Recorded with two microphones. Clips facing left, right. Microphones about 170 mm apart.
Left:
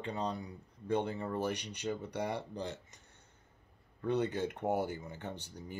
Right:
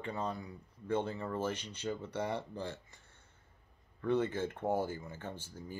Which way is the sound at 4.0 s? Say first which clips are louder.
Even; 20° left (ahead or behind).